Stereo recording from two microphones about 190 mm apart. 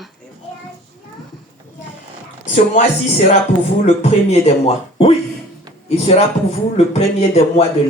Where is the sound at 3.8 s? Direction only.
35° left (ahead or behind).